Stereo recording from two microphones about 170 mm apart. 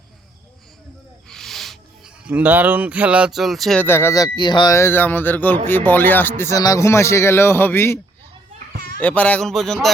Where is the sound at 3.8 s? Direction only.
15° left (ahead or behind).